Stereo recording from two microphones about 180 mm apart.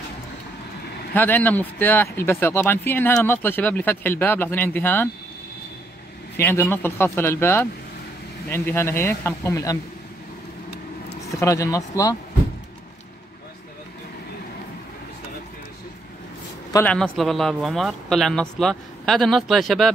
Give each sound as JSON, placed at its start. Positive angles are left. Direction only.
{"t": 1.1, "sound": "speech", "side_deg": 10}
{"t": 6.3, "sound": "speech", "side_deg": 15}
{"t": 11.3, "sound": "speech", "side_deg": 15}
{"t": 16.7, "sound": "speech", "side_deg": 5}